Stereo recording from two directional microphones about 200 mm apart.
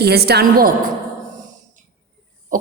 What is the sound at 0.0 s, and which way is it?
Speech, 55° right (ahead or behind).